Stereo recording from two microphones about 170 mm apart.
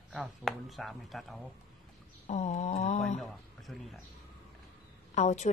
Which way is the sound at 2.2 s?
40° left (ahead or behind).